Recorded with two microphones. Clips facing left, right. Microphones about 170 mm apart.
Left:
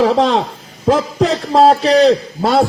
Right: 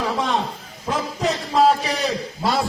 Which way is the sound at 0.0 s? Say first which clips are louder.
Left 11 dB; 75° left (ahead or behind).